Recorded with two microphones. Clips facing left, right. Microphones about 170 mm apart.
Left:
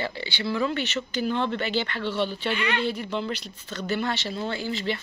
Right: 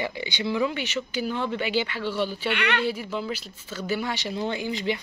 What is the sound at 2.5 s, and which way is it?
Speech, 70° right (ahead or behind).